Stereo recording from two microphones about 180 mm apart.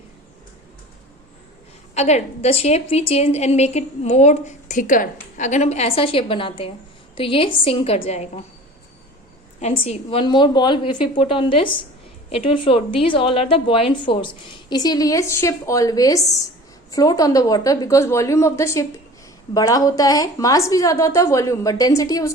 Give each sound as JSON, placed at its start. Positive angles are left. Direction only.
{"t": 2.0, "sound": "a woman's voice", "side_deg": 40}
{"t": 9.6, "sound": "a woman's voice", "side_deg": 35}